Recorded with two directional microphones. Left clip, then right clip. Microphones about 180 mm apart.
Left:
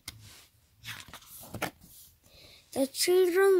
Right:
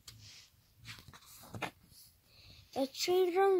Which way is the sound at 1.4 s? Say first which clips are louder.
Left 6 dB; 25° left (ahead or behind).